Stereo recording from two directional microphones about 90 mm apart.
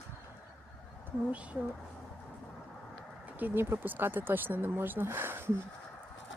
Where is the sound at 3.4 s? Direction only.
20° right (ahead or behind).